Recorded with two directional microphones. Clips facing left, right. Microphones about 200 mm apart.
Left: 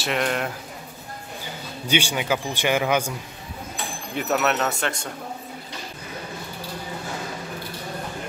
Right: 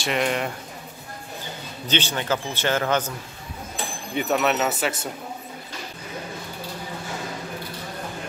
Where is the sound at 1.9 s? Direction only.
10° left (ahead or behind).